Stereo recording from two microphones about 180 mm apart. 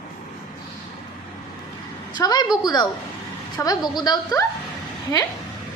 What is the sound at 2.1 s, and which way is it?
A woman's voice, 25° left (ahead or behind).